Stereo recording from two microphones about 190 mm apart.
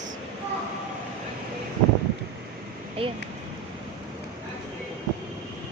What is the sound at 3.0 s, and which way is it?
Speech, 30° right (ahead or behind).